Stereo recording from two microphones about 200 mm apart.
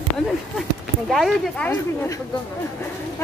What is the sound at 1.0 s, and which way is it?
Speech, centre (ahead or behind).